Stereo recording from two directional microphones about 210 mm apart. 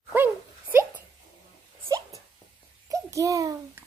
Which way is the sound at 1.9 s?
15° right (ahead or behind).